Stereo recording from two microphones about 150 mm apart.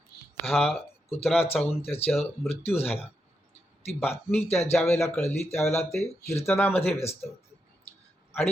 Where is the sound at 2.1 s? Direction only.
Centre (ahead or behind).